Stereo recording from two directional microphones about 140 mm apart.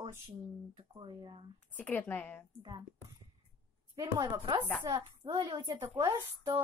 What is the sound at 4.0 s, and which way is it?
A woman's voice, 25° right (ahead or behind).